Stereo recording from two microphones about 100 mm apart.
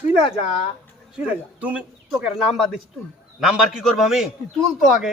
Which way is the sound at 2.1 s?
Centre (ahead or behind).